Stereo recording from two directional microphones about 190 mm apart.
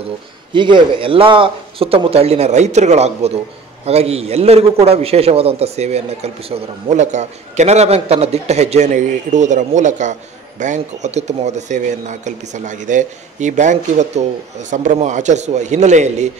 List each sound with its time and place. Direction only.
0.0 s a man's voice: 25° right (ahead or behind)